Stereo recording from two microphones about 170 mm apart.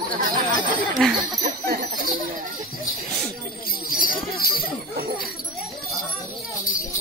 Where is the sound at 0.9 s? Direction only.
Centre (ahead or behind).